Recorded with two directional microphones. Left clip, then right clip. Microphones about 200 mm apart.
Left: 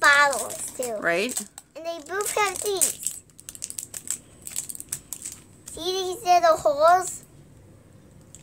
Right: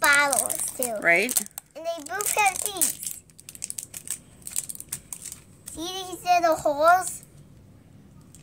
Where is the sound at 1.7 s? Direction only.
10° left (ahead or behind).